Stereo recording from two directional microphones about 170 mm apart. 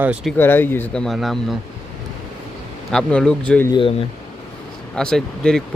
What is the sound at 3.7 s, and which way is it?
Speech, 30° left (ahead or behind).